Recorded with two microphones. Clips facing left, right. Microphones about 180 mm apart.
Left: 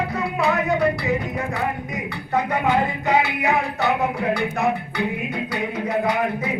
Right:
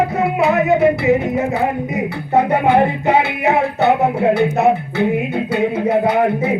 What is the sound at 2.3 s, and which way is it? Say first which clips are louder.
Music: right 7 dB; 25° right (ahead or behind).